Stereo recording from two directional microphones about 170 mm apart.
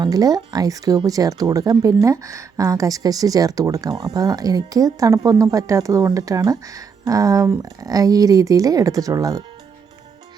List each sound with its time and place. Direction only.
0.0 s speech: 20° right (ahead or behind)